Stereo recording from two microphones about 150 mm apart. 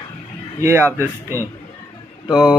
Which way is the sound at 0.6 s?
15° right (ahead or behind).